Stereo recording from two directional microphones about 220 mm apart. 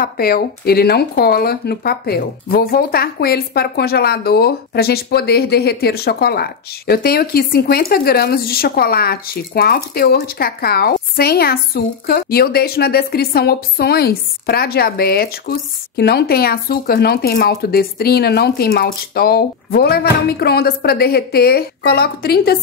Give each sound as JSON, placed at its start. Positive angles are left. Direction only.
{"t": 0.0, "sound": "speech", "side_deg": 45}